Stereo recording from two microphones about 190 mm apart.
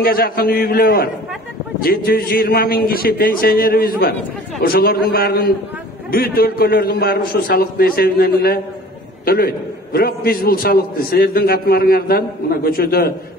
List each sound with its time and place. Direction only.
0.0 s a man's voice: 50° left (ahead or behind)